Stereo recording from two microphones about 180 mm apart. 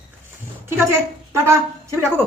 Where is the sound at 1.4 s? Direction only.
15° right (ahead or behind).